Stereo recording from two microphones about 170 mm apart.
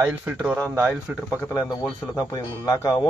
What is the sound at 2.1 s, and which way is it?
Speech, 20° left (ahead or behind).